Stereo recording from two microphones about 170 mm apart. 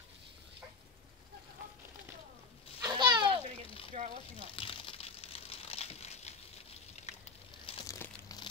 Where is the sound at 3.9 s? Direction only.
45° right (ahead or behind).